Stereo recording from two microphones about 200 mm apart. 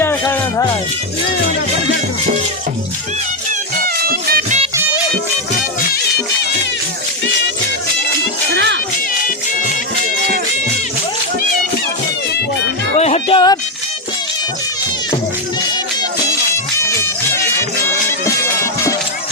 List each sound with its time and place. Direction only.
0.0 s music: 10° left (ahead or behind)
3.8 s music: 50° right (ahead or behind)
8.5 s music: 60° right (ahead or behind)
13.0 s music: 30° left (ahead or behind)
16.9 s music: 15° left (ahead or behind)
18.6 s music: 15° left (ahead or behind)